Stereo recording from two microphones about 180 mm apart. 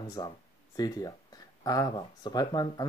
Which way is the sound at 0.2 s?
20° left (ahead or behind).